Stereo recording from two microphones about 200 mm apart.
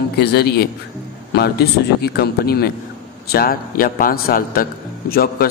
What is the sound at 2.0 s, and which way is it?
A man's voice, 50° left (ahead or behind).